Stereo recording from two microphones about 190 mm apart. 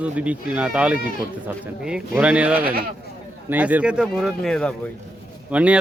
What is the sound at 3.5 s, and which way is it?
Speech, 10° right (ahead or behind).